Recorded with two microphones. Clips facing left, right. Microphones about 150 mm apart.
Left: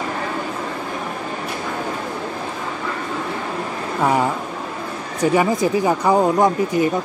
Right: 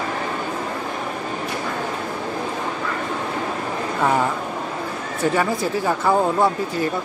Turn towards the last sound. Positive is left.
turn(degrees=15)  # may be behind; listen again after turning